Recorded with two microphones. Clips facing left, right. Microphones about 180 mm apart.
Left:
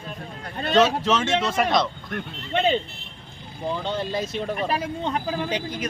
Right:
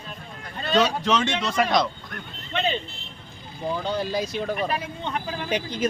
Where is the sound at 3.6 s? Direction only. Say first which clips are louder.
Even; centre (ahead or behind).